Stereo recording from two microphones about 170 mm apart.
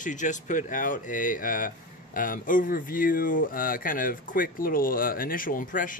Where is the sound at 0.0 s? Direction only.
45° left (ahead or behind).